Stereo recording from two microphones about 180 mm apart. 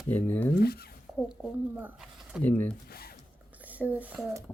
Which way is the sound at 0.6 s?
60° left (ahead or behind).